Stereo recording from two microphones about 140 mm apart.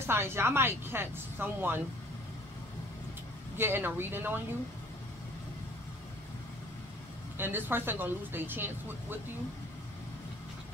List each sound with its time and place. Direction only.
0.0 s speech: 15° right (ahead or behind)
3.5 s speech: 15° right (ahead or behind)
7.3 s speech: 15° right (ahead or behind)